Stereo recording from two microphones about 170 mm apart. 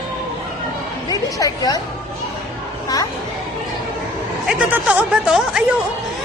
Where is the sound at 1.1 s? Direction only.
20° left (ahead or behind).